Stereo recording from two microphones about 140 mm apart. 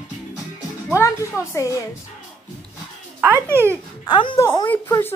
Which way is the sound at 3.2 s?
15° right (ahead or behind).